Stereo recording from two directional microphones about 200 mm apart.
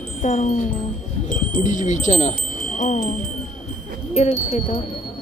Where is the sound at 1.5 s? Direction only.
40° left (ahead or behind).